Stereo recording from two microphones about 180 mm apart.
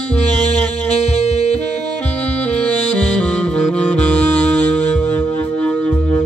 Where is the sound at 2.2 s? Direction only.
5° left (ahead or behind).